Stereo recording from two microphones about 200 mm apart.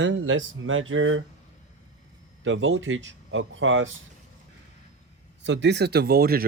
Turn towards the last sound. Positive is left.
turn(degrees=-50)  # may be behind; listen again after turning